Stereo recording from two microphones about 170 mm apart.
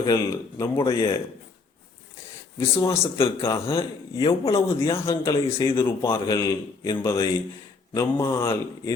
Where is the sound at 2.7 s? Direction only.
15° left (ahead or behind).